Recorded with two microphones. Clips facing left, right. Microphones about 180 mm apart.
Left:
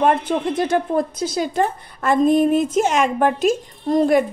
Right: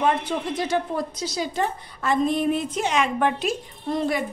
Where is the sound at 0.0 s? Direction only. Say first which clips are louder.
Left 5 dB; 50° left (ahead or behind).